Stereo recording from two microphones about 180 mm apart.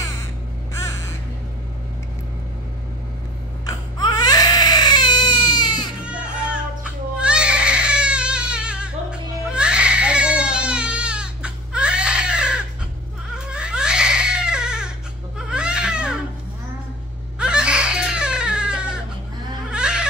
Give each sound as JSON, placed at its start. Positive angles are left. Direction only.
{"t": 0.7, "sound": "crow", "side_deg": 15}
{"t": 3.6, "sound": "baby cry", "side_deg": 20}
{"t": 6.0, "sound": "music", "side_deg": -5}
{"t": 13.5, "sound": "baby cry", "side_deg": -5}
{"t": 17.4, "sound": "baby cry", "side_deg": -5}
{"t": 19.7, "sound": "a sound", "side_deg": -5}